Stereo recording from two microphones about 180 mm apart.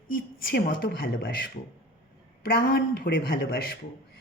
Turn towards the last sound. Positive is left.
turn(degrees=55)  # may be behind; listen again after turning